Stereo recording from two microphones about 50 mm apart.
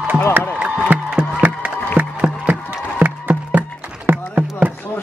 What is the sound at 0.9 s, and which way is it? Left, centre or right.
Music, right.